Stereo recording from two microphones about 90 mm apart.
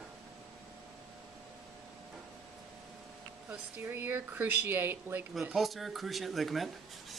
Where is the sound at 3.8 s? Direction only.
20° right (ahead or behind).